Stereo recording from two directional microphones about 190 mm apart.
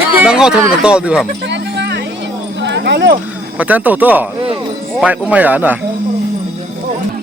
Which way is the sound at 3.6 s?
10° right (ahead or behind).